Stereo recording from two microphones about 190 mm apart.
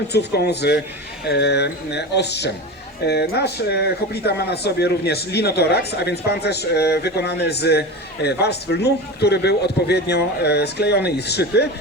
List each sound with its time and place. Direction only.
0.1 s speech: 60° left (ahead or behind)